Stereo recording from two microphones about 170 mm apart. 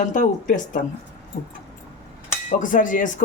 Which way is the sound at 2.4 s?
50° left (ahead or behind).